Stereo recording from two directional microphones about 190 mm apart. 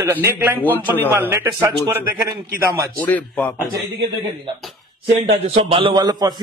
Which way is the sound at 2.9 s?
10° left (ahead or behind).